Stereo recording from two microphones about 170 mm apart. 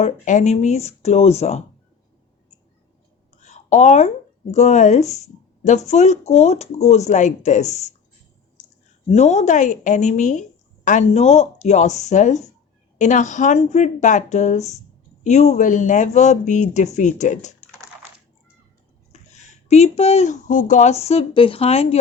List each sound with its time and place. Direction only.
0.0 s speech: 45° left (ahead or behind)
3.4 s a sound: 45° left (ahead or behind)
4.5 s speech: 45° left (ahead or behind)
9.1 s speech: 40° left (ahead or behind)
19.1 s speech: 40° left (ahead or behind)